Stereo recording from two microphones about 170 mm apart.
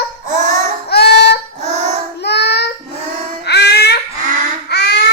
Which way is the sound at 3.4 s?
75° left (ahead or behind).